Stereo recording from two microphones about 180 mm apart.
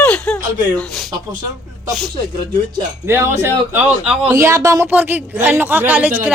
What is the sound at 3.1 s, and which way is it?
A man's voice, 15° right (ahead or behind).